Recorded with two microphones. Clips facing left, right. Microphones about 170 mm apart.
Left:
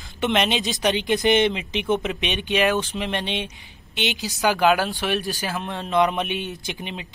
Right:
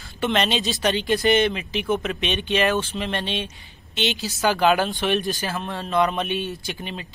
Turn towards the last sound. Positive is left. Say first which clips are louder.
# even
turn(degrees=15)  # may be behind; listen again after turning